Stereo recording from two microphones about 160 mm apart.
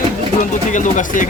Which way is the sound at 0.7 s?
50° left (ahead or behind).